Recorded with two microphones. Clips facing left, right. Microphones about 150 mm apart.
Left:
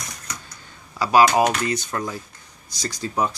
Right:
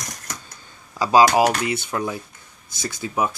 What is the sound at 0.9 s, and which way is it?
Speech, 15° right (ahead or behind).